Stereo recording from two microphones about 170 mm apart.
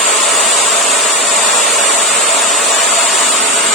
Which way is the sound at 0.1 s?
Centre (ahead or behind).